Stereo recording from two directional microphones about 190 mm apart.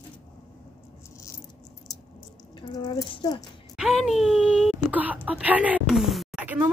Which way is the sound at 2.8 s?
25° left (ahead or behind).